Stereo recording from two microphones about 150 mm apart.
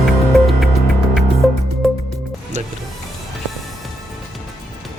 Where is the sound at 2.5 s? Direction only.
50° right (ahead or behind).